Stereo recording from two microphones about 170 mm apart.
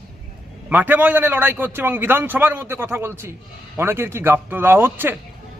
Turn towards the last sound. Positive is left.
turn(degrees=-15)  # may be behind; listen again after turning